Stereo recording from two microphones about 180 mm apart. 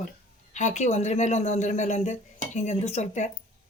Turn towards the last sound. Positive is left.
turn(degrees=40)  # may be behind; listen again after turning